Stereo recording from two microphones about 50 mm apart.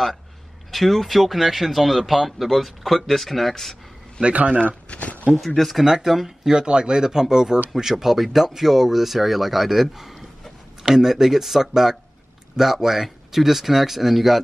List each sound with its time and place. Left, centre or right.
0.7 s speech: centre
4.2 s a man's voice: right
4.8 s a sound: left
5.6 s speech: centre
5.9 s speech: centre